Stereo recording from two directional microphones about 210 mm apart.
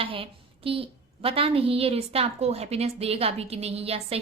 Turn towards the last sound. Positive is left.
turn(degrees=-30)  # may be behind; listen again after turning